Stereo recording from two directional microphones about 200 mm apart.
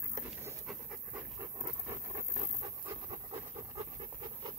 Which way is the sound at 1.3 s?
15° right (ahead or behind).